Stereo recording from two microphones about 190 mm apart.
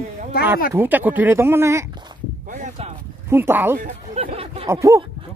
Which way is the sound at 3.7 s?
45° right (ahead or behind).